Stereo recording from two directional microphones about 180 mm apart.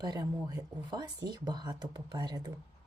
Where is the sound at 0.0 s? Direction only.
20° right (ahead or behind).